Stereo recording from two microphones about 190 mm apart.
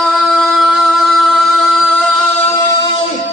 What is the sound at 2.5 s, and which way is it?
Singing, 15° left (ahead or behind).